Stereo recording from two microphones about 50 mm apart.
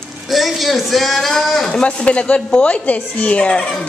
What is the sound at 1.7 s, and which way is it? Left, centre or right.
A woman's voice, left.